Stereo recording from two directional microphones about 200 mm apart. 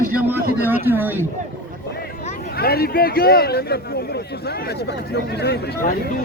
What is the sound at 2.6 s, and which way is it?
A man's voice, 50° left (ahead or behind).